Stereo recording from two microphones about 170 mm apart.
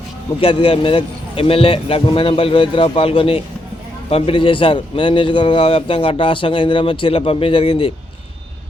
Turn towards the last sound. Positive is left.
turn(degrees=30)  # may be behind; listen again after turning